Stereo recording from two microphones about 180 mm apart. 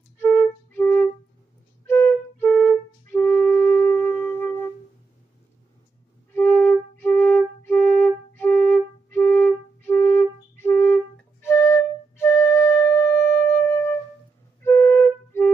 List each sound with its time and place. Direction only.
0.2 s flute: 10° left (ahead or behind)
6.3 s flute: 10° left (ahead or behind)
12.2 s flute: 15° left (ahead or behind)